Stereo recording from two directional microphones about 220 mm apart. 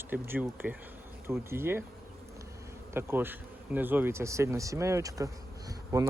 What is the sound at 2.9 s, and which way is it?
Speech, 10° right (ahead or behind).